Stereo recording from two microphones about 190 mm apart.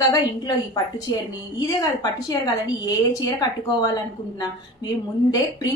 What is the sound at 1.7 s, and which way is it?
A woman's voice, 20° left (ahead or behind).